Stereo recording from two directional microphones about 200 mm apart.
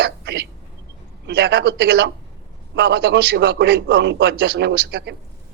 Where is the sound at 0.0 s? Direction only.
55° right (ahead or behind).